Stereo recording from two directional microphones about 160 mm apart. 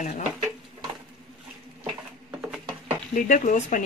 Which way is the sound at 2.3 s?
10° right (ahead or behind).